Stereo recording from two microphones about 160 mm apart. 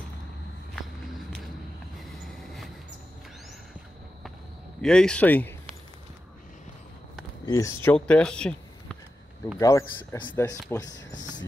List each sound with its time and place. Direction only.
2.0 s train: centre (ahead or behind)
4.8 s speech: 5° left (ahead or behind)
7.4 s speech: 20° left (ahead or behind)
9.6 s speech: 20° left (ahead or behind)